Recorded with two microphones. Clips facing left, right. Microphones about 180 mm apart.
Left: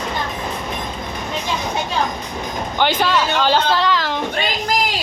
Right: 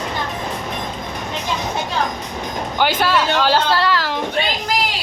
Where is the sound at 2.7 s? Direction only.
5° right (ahead or behind).